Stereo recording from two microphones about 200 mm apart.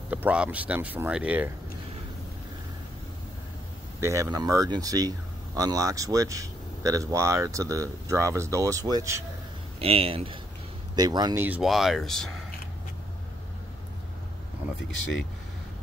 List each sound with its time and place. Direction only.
0.1 s speech: 5° right (ahead or behind)
4.0 s speech: 15° right (ahead or behind)
9.8 s speech: 30° right (ahead or behind)
11.4 s speech: 5° right (ahead or behind)